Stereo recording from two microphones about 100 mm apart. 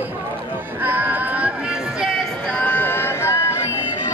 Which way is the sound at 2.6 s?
20° left (ahead or behind).